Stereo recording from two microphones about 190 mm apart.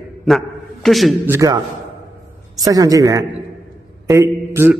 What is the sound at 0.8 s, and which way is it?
Speech, centre (ahead or behind).